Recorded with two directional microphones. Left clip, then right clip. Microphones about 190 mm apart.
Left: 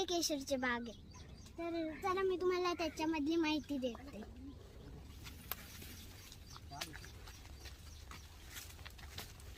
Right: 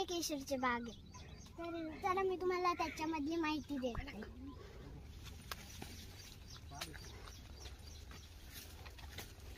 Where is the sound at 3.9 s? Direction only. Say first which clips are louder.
Right 3 dB; 30° right (ahead or behind).